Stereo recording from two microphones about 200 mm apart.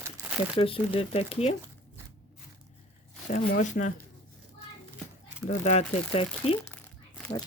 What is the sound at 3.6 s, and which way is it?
Speech, 40° left (ahead or behind).